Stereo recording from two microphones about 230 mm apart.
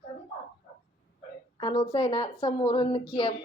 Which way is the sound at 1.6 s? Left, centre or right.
Left.